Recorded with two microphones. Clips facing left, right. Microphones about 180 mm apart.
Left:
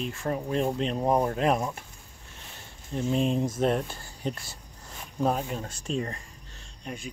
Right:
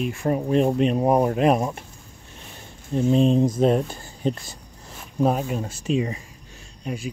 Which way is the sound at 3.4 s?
15° right (ahead or behind).